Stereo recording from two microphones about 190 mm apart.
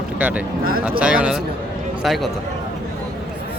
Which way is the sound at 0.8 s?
5° right (ahead or behind).